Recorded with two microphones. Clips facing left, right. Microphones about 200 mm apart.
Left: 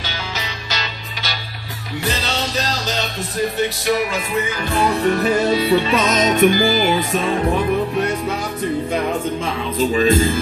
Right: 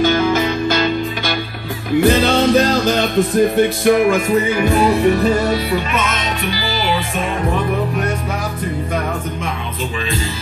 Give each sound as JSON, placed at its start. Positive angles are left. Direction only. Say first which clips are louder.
{"t": 0.0, "sound": "music", "louder": "right 15 dB", "side_deg": -50}
{"t": 4.5, "sound": "music", "louder": "right 5 dB", "side_deg": -15}
{"t": 5.5, "sound": "music", "louder": "left 2 dB", "side_deg": 25}
{"t": 9.8, "sound": "music", "louder": "left 11 dB", "side_deg": 45}